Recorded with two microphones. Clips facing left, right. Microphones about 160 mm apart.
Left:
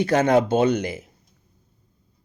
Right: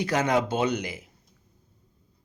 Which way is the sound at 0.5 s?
55° left (ahead or behind).